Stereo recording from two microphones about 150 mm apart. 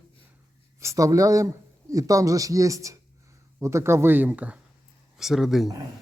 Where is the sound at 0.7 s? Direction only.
20° right (ahead or behind).